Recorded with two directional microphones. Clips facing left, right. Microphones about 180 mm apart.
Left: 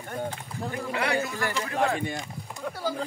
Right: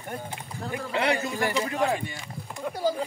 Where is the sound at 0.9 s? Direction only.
20° right (ahead or behind).